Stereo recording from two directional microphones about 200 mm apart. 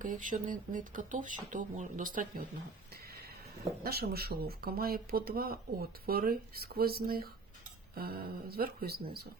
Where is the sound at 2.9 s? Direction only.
50° right (ahead or behind).